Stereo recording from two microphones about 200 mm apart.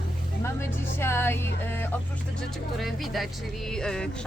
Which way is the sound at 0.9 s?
10° left (ahead or behind).